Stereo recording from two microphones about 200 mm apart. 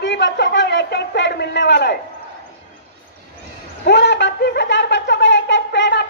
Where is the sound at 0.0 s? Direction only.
60° left (ahead or behind).